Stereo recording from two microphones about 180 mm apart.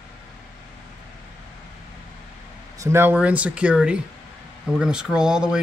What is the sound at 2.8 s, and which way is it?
Speech, 15° right (ahead or behind).